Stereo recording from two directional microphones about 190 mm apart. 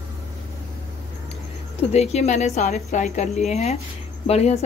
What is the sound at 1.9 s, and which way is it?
A woman's voice, 35° left (ahead or behind).